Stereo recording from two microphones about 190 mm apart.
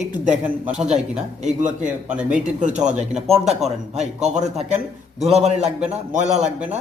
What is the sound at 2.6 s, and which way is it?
Speech, 40° right (ahead or behind).